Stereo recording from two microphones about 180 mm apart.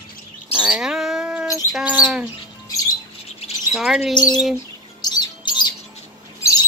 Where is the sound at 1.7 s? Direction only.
5° right (ahead or behind).